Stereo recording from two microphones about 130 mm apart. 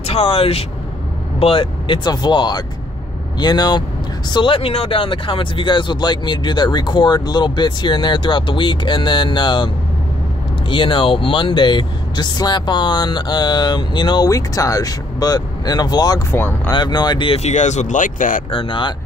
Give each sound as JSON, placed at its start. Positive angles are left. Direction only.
{"t": 0.0, "sound": "speech", "side_deg": 50}
{"t": 10.7, "sound": "speech", "side_deg": 40}
{"t": 16.3, "sound": "speech", "side_deg": 15}
{"t": 16.7, "sound": "speech", "side_deg": 35}
{"t": 17.3, "sound": "speech", "side_deg": 60}
{"t": 18.5, "sound": "speech", "side_deg": 40}